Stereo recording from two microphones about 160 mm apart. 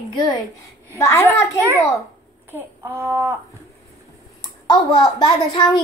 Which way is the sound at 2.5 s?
15° right (ahead or behind).